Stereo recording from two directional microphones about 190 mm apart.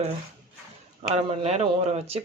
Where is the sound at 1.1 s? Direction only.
35° right (ahead or behind).